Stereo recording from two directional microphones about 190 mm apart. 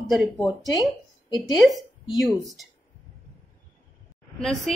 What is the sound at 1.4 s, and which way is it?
A woman's voice, centre (ahead or behind).